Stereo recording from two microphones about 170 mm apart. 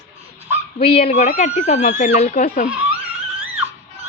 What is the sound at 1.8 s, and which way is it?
Speech, 60° left (ahead or behind).